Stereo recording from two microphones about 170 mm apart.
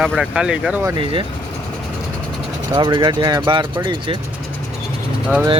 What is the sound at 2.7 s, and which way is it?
Speech, 30° right (ahead or behind).